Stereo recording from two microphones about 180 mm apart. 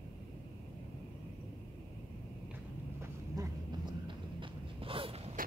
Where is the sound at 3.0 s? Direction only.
20° right (ahead or behind).